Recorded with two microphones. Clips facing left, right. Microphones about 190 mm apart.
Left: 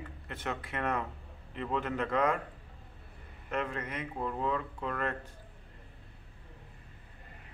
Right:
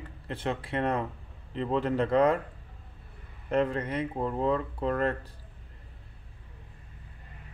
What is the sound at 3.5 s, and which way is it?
Speech, 35° right (ahead or behind).